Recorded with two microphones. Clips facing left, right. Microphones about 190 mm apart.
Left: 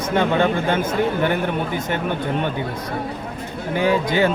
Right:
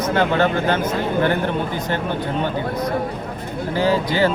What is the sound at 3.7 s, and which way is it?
Speech, 20° left (ahead or behind).